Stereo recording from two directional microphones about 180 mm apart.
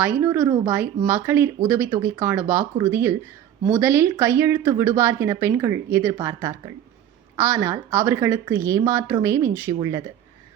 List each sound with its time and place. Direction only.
0.0 s speech: 10° right (ahead or behind)